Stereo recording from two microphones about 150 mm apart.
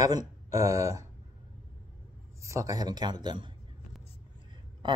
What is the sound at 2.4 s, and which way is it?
A man's voice, 20° right (ahead or behind).